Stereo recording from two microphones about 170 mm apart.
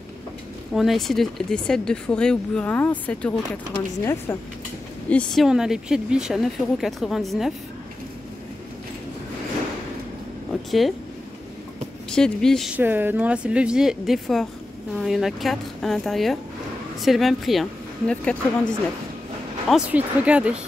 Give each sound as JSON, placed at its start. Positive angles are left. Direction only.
{"t": 0.7, "sound": "speech", "side_deg": 0}
{"t": 5.1, "sound": "speech", "side_deg": 0}
{"t": 10.5, "sound": "a sound", "side_deg": 0}
{"t": 12.1, "sound": "speech", "side_deg": 5}
{"t": 12.7, "sound": "speech", "side_deg": -10}
{"t": 19.7, "sound": "speech", "side_deg": -10}